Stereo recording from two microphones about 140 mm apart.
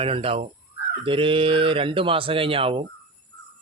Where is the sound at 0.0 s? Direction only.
40° right (ahead or behind).